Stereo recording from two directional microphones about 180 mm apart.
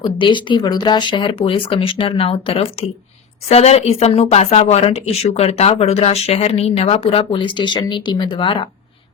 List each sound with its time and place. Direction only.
0.0 s speech: 25° left (ahead or behind)